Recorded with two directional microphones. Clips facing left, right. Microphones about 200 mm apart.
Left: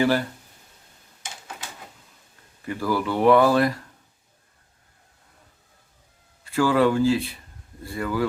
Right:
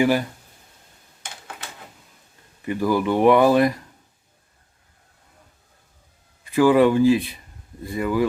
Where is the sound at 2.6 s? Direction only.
15° right (ahead or behind).